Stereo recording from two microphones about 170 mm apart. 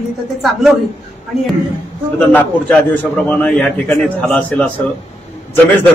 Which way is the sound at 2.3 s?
10° left (ahead or behind).